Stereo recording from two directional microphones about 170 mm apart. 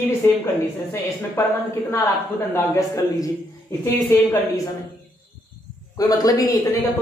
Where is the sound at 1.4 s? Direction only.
15° left (ahead or behind).